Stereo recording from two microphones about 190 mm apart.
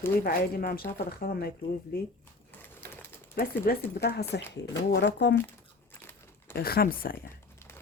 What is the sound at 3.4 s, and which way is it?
Speech, 55° left (ahead or behind).